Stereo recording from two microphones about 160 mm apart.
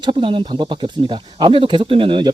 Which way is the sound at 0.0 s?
30° right (ahead or behind).